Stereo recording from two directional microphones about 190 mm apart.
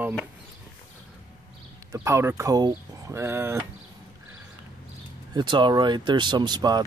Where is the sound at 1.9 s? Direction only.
15° right (ahead or behind).